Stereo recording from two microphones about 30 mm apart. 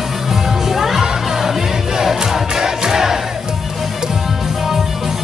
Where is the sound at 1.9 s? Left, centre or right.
Centre.